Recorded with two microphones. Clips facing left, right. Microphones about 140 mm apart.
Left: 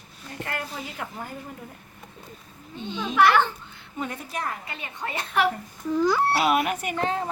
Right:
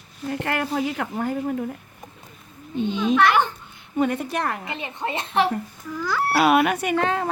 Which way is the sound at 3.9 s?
75° right (ahead or behind).